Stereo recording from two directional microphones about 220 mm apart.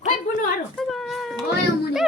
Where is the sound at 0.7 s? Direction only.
Centre (ahead or behind).